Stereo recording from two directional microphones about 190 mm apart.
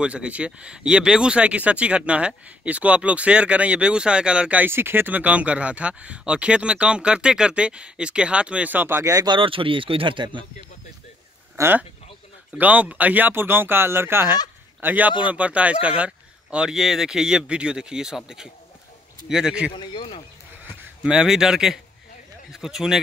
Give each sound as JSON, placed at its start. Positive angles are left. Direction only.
{"t": 0.0, "sound": "speech", "side_deg": -5}
{"t": 11.5, "sound": "speech", "side_deg": -15}
{"t": 19.7, "sound": "speech", "side_deg": 25}
{"t": 21.0, "sound": "a man's voice", "side_deg": -5}